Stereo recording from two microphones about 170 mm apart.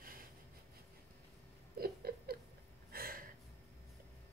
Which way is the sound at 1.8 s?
65° right (ahead or behind).